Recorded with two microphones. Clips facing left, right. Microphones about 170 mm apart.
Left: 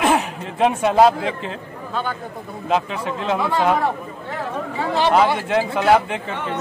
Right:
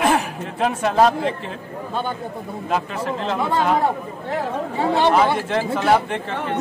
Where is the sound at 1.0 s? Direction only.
Centre (ahead or behind).